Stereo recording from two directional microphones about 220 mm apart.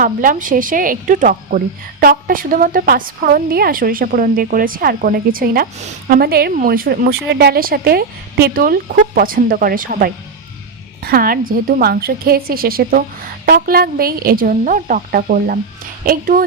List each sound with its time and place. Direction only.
0.0 s speech: 40° right (ahead or behind)